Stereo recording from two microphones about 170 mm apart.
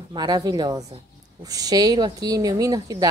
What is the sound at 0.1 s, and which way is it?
Speech, 25° right (ahead or behind).